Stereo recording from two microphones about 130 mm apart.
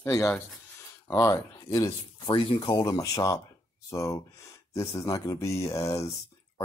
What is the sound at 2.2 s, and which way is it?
Speech, 40° left (ahead or behind).